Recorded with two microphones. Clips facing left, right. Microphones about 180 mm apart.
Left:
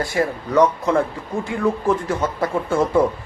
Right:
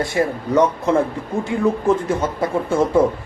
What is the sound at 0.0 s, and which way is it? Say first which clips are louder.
Speech: right 2 dB; 25° right (ahead or behind).